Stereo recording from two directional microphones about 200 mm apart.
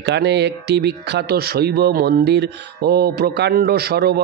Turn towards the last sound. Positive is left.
turn(degrees=-50)  # may be behind; listen again after turning